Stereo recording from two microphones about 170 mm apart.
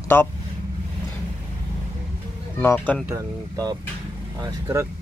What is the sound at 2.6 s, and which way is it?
Speech, 15° left (ahead or behind).